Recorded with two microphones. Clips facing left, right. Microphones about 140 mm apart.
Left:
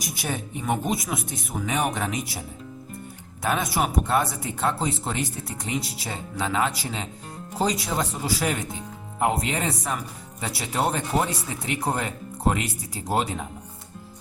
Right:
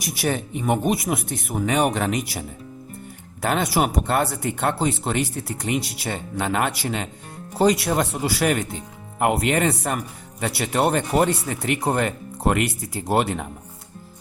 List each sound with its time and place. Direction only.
0.0 s speech: 70° right (ahead or behind)
3.4 s speech: 70° right (ahead or behind)